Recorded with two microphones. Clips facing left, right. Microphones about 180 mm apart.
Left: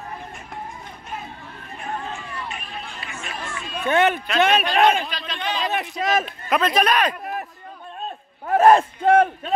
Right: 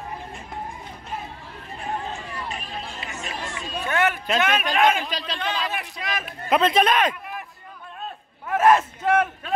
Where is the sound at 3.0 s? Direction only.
40° right (ahead or behind).